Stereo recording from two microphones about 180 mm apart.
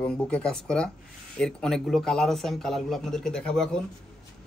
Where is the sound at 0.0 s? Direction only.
5° left (ahead or behind).